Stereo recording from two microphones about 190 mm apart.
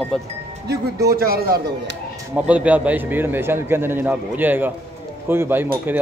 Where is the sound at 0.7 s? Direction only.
55° right (ahead or behind).